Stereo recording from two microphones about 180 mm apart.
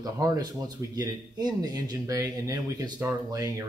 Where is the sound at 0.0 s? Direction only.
20° right (ahead or behind).